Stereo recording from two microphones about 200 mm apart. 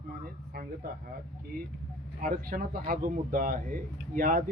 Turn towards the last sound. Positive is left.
turn(degrees=-40)  # may be behind; listen again after turning